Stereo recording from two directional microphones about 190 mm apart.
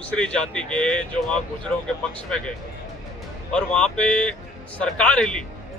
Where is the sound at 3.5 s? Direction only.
5° left (ahead or behind).